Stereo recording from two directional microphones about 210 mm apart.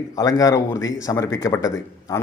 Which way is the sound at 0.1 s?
15° left (ahead or behind).